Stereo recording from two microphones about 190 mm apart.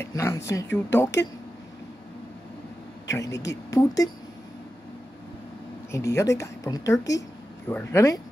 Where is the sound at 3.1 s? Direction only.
15° left (ahead or behind).